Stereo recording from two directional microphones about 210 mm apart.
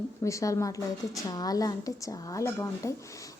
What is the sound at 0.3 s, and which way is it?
A woman's voice, 15° left (ahead or behind).